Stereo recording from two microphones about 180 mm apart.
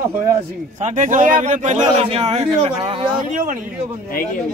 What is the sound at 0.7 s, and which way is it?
Speech, 40° right (ahead or behind).